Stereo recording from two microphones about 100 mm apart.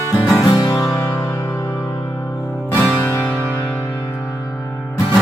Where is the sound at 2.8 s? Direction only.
15° left (ahead or behind).